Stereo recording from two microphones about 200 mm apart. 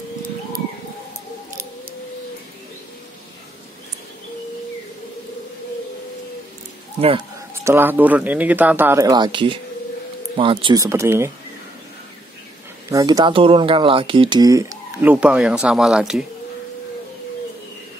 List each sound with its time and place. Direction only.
7.0 s speech: 30° right (ahead or behind)
7.6 s speech: 10° right (ahead or behind)
12.9 s speech: 20° right (ahead or behind); by 16.3 s 5° right (ahead or behind)